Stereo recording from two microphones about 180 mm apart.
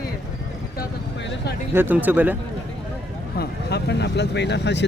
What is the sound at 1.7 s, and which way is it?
Speech, 10° right (ahead or behind).